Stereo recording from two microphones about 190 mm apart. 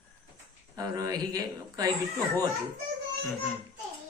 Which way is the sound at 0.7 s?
20° right (ahead or behind).